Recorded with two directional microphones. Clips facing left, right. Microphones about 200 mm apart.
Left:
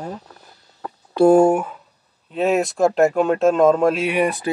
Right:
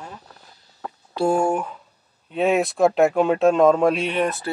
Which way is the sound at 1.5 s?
10° left (ahead or behind).